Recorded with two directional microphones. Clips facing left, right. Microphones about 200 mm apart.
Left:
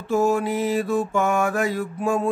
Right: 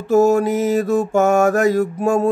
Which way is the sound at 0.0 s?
40° right (ahead or behind).